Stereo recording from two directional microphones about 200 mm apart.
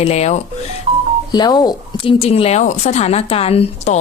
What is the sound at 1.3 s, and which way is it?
Speech, 20° left (ahead or behind).